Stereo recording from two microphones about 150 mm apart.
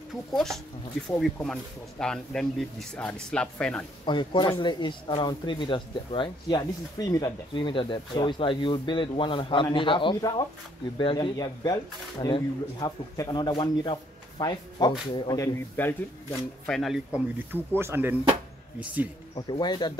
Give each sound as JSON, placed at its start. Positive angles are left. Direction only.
{"t": 0.3, "sound": "speech", "side_deg": 0}
{"t": 4.0, "sound": "speech", "side_deg": 30}
{"t": 16.7, "sound": "speech", "side_deg": 0}
{"t": 19.3, "sound": "speech", "side_deg": 30}